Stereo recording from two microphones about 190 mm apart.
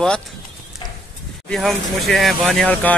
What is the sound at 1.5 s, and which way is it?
Speech, centre (ahead or behind).